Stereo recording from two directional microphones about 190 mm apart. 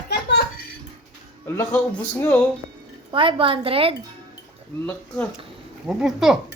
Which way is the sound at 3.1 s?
25° right (ahead or behind).